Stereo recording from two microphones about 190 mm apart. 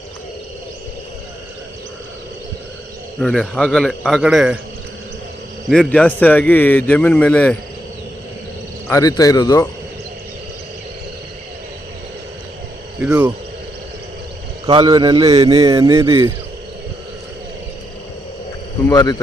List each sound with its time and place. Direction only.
3.2 s speech: 5° left (ahead or behind)
5.6 s a man's voice: centre (ahead or behind)
8.9 s a man's voice: 20° left (ahead or behind)
13.0 s speech: 5° right (ahead or behind)
14.7 s a man's voice: 20° right (ahead or behind)
18.9 s speech: 20° left (ahead or behind)